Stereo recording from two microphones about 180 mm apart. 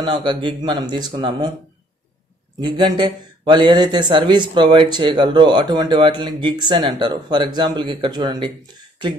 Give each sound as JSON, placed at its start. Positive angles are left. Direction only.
{"t": 0.0, "sound": "speech", "side_deg": -25}
{"t": 2.6, "sound": "speech", "side_deg": -25}